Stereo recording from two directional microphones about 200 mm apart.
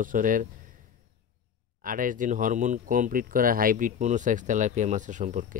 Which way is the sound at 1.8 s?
45° right (ahead or behind).